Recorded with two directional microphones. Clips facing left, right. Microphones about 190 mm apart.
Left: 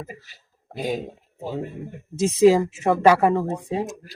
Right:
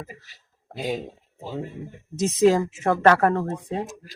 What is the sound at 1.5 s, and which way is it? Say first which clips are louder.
Speech: left 3 dB; 55° left (ahead or behind).